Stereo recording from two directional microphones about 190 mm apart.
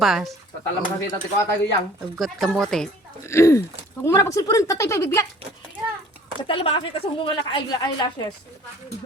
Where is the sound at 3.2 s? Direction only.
15° left (ahead or behind).